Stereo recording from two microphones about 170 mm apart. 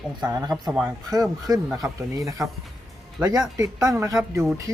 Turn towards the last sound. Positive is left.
turn(degrees=-20)  # may be behind; listen again after turning